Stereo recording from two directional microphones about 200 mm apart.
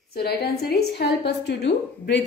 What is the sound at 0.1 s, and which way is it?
A woman's voice, 50° left (ahead or behind).